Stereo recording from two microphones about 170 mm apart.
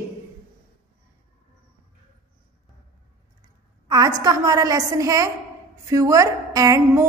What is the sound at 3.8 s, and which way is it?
A woman's voice, 20° right (ahead or behind).